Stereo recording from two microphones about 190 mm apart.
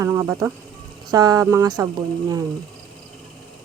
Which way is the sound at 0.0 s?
15° right (ahead or behind).